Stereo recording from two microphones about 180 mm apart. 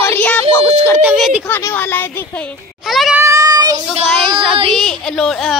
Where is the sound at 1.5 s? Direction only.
15° left (ahead or behind).